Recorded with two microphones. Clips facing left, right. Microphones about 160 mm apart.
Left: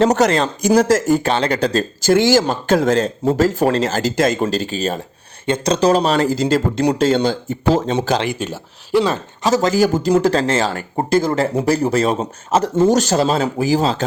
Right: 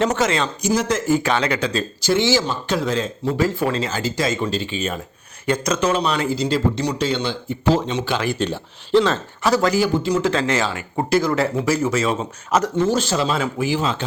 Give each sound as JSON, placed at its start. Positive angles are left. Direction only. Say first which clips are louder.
{"t": 0.0, "sound": "speech", "louder": "left 5 dB", "side_deg": 40}
{"t": 8.4, "sound": "speech", "louder": "right 2 dB", "side_deg": 10}
{"t": 9.7, "sound": "speech", "louder": "left 4 dB", "side_deg": 40}
{"t": 12.5, "sound": "speech", "louder": "left 2 dB", "side_deg": 30}
{"t": 12.7, "sound": "speech", "louder": "left 5 dB", "side_deg": 40}